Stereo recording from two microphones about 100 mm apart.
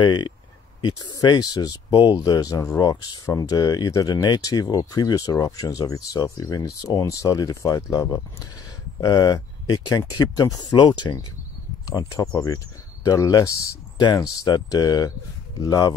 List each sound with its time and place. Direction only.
0.0 s speech: 50° left (ahead or behind)
11.8 s speech: 35° left (ahead or behind)